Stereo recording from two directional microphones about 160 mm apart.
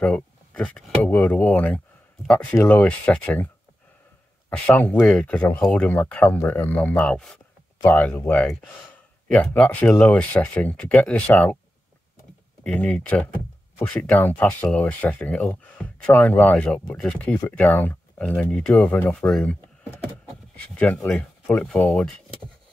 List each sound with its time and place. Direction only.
0.0 s speech: 10° left (ahead or behind)
4.5 s speech: 10° left (ahead or behind)
12.6 s speech: 10° left (ahead or behind)
20.7 s speech: 10° left (ahead or behind)